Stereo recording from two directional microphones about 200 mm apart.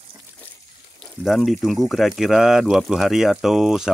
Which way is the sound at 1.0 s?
Centre (ahead or behind).